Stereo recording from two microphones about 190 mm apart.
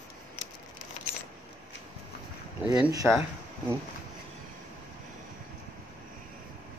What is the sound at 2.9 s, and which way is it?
Speech, 15° right (ahead or behind).